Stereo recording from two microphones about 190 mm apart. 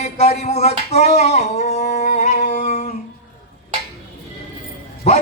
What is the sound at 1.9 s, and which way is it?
Music, 35° left (ahead or behind).